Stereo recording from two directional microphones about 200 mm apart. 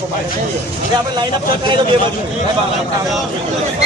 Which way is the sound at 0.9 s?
20° right (ahead or behind).